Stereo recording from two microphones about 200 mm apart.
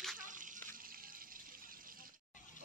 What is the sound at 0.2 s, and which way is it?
Water, 40° right (ahead or behind).